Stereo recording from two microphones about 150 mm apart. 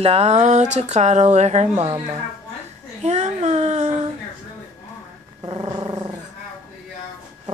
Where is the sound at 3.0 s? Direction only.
50° right (ahead or behind).